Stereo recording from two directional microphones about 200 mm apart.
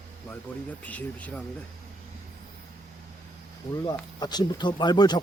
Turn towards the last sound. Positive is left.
turn(degrees=20)  # may be behind; listen again after turning